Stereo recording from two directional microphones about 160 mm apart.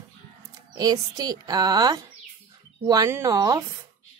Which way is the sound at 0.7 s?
25° right (ahead or behind).